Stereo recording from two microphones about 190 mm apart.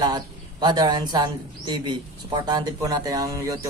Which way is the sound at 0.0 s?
20° right (ahead or behind).